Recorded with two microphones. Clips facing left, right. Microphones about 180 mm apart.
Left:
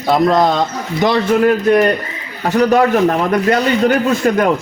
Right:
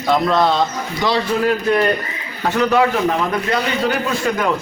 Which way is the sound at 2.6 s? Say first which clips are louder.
Left 4 dB; 40° left (ahead or behind).